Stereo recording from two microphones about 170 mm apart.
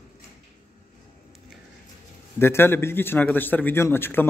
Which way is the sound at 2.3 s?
15° left (ahead or behind).